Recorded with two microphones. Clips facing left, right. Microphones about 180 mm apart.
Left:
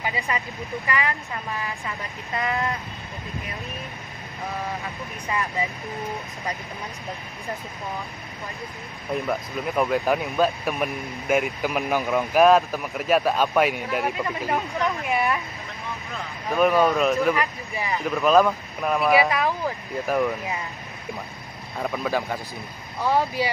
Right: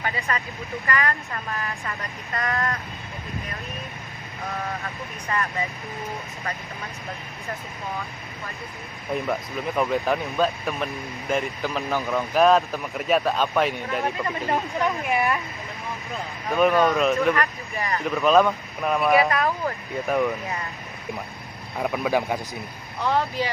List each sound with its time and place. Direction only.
0.0 s speech: 10° left (ahead or behind)
5.3 s speech: 10° left (ahead or behind)
9.1 s speech: centre (ahead or behind)
12.4 s speech: centre (ahead or behind)
16.4 s speech: 5° left (ahead or behind)
21.7 s speech: 5° right (ahead or behind)
22.9 s speech: 10° left (ahead or behind)